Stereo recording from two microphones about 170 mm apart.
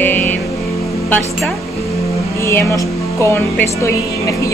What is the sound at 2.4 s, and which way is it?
Speech, 15° left (ahead or behind).